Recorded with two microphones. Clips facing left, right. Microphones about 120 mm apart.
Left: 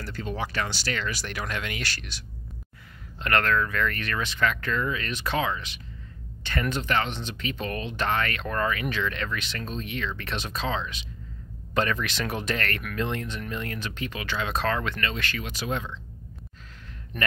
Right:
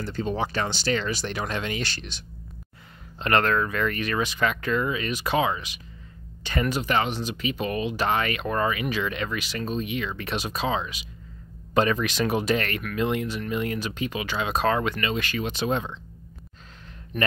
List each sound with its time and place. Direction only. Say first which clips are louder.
0.0 s speech: right 5 dB; 25° right (ahead or behind)
17.1 s speech: right 3 dB; 5° right (ahead or behind)